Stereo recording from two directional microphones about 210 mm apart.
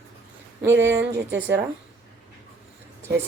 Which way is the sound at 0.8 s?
10° right (ahead or behind).